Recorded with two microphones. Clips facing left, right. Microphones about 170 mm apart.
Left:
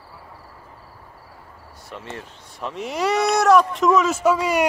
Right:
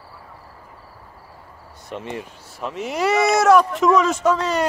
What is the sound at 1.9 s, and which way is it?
Speech, 15° right (ahead or behind).